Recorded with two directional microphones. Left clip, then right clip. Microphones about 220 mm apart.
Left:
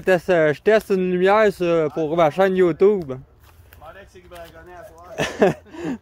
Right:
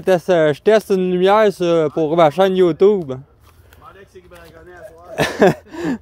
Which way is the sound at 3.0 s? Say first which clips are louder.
Right 4 dB; 20° right (ahead or behind).